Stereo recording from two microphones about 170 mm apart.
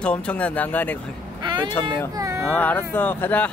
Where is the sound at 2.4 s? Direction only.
10° left (ahead or behind).